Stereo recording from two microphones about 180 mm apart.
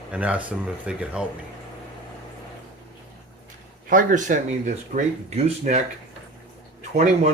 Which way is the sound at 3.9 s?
50° right (ahead or behind).